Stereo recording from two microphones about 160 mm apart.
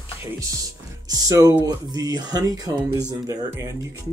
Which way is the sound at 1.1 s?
20° right (ahead or behind).